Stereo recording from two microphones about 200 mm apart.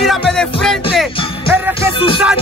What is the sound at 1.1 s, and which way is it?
Music, 25° left (ahead or behind).